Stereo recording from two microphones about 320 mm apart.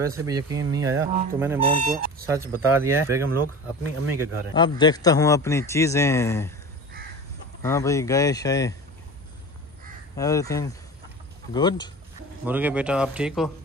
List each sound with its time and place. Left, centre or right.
0.0 s speech: centre
1.6 s speech: right
2.2 s speech: centre
4.6 s a man's voice: centre
7.6 s a man's voice: centre
10.1 s a man's voice: centre
12.4 s speech: centre